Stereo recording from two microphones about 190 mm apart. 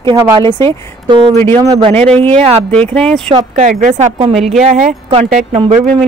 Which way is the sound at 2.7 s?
5° left (ahead or behind).